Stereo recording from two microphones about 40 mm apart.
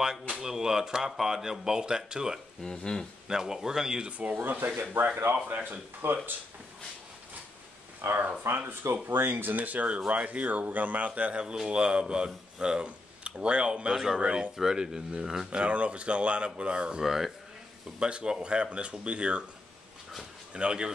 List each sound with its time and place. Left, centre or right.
0.4 s speech: centre
2.7 s speech: centre
3.3 s speech: centre
4.2 s speech: right
8.0 s speech: right
8.9 s speech: right
11.5 s speech: centre
15.5 s speech: right
17.0 s speech: centre
17.9 s speech: right
20.5 s speech: right